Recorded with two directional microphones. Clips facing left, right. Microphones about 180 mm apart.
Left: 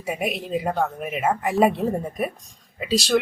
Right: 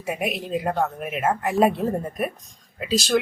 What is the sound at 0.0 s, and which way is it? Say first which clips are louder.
Speech: even; centre (ahead or behind).